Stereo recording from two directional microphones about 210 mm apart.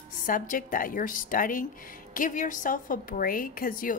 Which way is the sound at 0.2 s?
40° left (ahead or behind).